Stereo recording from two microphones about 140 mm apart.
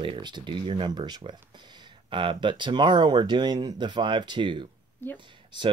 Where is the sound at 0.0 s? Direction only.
35° right (ahead or behind).